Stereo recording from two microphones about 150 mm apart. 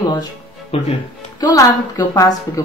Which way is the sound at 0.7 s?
40° left (ahead or behind).